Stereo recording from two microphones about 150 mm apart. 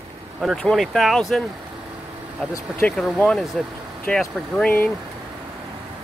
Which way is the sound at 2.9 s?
Centre (ahead or behind).